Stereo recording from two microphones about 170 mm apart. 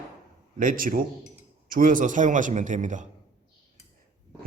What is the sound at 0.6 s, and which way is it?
Speech, 50° right (ahead or behind).